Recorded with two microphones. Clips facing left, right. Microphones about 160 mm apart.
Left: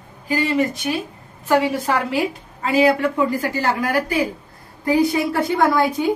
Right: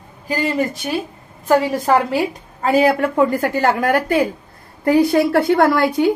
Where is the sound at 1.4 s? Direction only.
40° right (ahead or behind).